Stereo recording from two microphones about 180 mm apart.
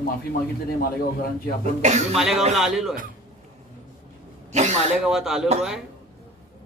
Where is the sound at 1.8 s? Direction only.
40° right (ahead or behind).